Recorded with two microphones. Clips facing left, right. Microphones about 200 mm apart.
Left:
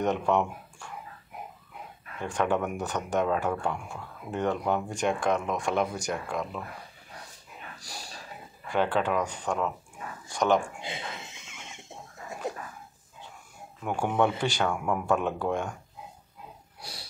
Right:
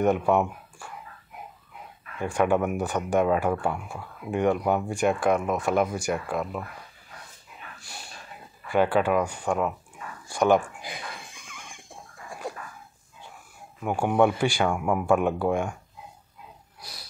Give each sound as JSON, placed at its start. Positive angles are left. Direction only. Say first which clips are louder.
{"t": 0.0, "sound": "speech", "louder": "right 4 dB", "side_deg": -10}
{"t": 2.2, "sound": "speech", "louder": "right 4 dB", "side_deg": -10}
{"t": 7.8, "sound": "a sound", "louder": "left 1 dB", "side_deg": 35}
{"t": 8.6, "sound": "speech", "louder": "right 4 dB", "side_deg": -10}
{"t": 10.8, "sound": "a sound", "louder": "left 1 dB", "side_deg": 25}
{"t": 13.8, "sound": "speech", "louder": "right 4 dB", "side_deg": -10}